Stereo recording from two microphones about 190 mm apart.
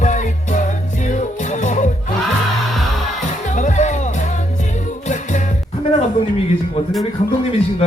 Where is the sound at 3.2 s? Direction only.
40° left (ahead or behind).